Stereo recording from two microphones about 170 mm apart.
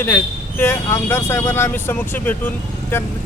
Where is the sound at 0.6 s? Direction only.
15° left (ahead or behind).